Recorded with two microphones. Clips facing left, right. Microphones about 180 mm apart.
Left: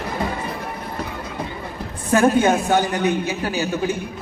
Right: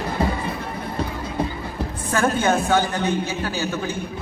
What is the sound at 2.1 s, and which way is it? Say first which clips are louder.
A man's voice: left 5 dB; 15° left (ahead or behind).